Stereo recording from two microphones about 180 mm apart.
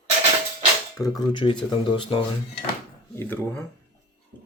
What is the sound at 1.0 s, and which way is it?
Speech, 25° left (ahead or behind).